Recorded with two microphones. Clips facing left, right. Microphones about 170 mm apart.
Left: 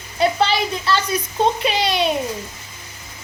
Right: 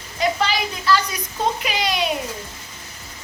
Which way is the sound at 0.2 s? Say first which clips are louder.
Left 3 dB; 30° left (ahead or behind).